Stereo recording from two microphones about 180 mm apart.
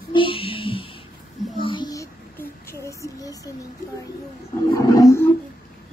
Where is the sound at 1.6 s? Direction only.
25° left (ahead or behind).